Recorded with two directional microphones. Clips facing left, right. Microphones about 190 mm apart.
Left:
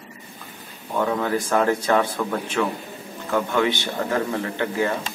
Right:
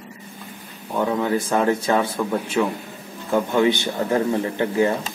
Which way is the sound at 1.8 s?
25° right (ahead or behind).